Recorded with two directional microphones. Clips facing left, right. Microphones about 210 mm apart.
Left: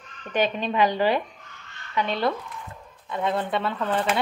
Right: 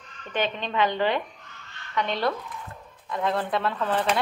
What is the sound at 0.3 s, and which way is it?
Speech, 10° left (ahead or behind).